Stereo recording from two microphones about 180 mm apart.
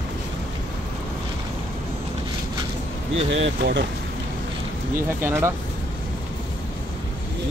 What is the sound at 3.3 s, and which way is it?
Speech, 80° right.